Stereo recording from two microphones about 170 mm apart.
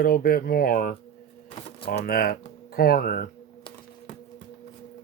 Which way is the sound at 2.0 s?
60° left (ahead or behind).